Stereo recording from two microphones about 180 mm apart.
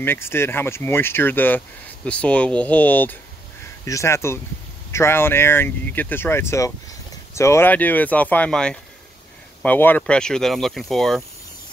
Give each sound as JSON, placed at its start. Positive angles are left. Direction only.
{"t": 0.0, "sound": "speech", "side_deg": 15}